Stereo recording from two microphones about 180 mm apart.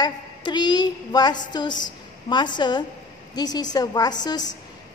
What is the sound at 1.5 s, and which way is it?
A woman's voice, 25° left (ahead or behind).